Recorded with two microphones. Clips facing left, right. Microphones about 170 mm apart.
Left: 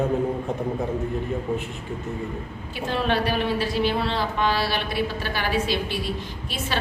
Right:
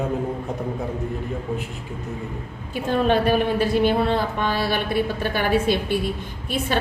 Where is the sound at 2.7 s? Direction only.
45° right (ahead or behind).